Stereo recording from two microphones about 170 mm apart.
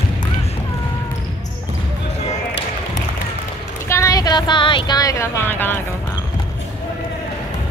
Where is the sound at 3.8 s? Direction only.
15° left (ahead or behind).